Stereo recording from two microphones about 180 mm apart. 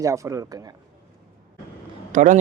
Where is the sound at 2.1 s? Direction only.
45° right (ahead or behind).